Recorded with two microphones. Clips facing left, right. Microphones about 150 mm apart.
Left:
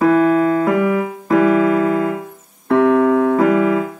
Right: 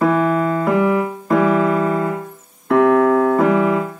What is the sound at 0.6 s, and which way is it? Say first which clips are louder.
Keyboard: even; 5° left (ahead or behind).